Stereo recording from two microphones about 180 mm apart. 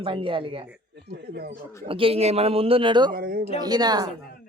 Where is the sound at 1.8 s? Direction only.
30° right (ahead or behind).